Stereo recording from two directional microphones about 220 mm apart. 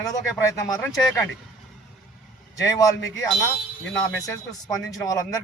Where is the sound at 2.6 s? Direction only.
15° left (ahead or behind).